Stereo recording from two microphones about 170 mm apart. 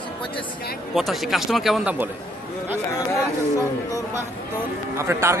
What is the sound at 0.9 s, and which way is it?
Speech, centre (ahead or behind).